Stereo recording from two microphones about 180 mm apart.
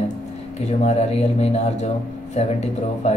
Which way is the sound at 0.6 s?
35° left (ahead or behind).